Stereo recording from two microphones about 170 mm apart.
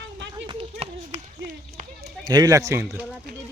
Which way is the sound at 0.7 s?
45° right (ahead or behind).